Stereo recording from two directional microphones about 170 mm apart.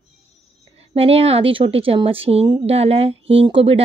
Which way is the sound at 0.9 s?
35° right (ahead or behind).